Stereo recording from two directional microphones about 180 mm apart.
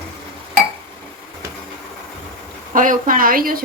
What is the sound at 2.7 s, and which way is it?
Speech, 50° right (ahead or behind).